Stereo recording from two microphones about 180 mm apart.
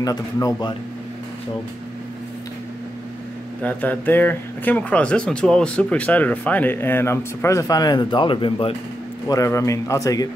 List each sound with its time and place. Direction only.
0.0 s a man's voice: 20° left (ahead or behind)
3.6 s speech: 10° left (ahead or behind); by 8.7 s 30° left (ahead or behind)
9.3 s speech: 15° left (ahead or behind)